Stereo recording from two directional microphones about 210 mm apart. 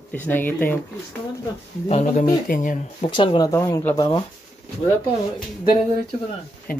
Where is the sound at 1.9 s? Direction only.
30° left (ahead or behind).